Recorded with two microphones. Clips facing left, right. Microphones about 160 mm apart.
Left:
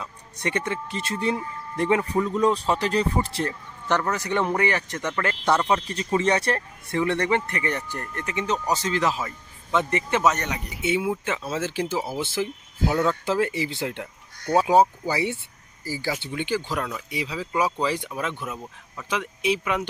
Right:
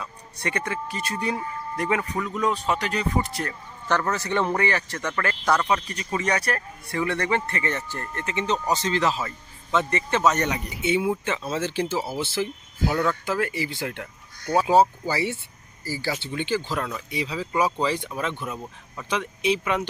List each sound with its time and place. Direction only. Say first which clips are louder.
0.0 s speech: left 1 dB; 20° left (ahead or behind)
14.7 s speech: right 2 dB; 15° left (ahead or behind)